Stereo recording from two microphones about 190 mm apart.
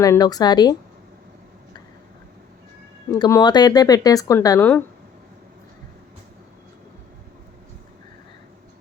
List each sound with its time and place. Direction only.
0.0 s speech: 20° left (ahead or behind)
3.1 s speech: 20° left (ahead or behind)